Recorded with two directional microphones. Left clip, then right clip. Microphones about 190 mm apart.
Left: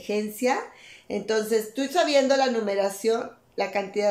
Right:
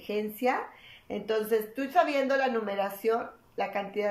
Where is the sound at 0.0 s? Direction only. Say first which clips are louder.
Left 3 dB; 15° left (ahead or behind).